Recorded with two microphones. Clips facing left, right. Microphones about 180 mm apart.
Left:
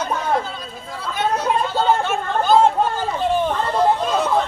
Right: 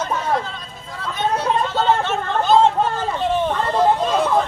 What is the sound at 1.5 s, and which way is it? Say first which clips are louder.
Chatter: even; 5° left (ahead or behind).